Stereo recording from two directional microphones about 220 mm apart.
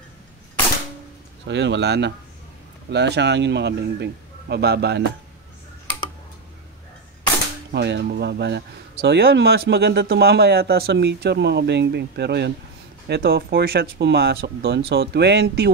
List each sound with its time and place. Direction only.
1.5 s speech: 50° right (ahead or behind)
7.7 s speech: 50° right (ahead or behind)